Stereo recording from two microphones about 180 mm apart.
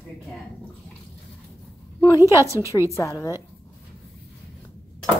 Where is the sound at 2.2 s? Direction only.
15° right (ahead or behind).